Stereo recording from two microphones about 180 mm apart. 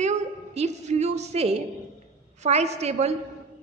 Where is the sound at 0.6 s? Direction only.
40° right (ahead or behind).